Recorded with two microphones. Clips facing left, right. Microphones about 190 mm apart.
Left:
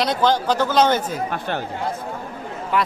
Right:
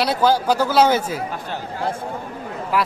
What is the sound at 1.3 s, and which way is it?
Speech, 65° left (ahead or behind).